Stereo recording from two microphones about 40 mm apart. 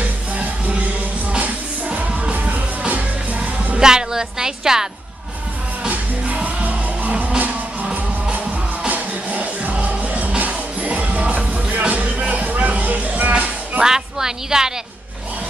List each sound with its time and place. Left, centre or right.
0.0 s music: right
3.8 s music: centre
5.9 s music: right
8.8 s music: right
13.8 s music: centre